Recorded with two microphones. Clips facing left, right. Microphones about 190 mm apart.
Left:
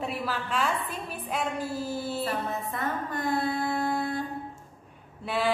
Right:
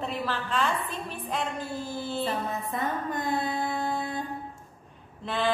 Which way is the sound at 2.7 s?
20° right (ahead or behind).